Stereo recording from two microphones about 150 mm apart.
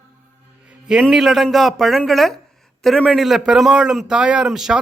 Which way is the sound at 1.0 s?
Centre (ahead or behind).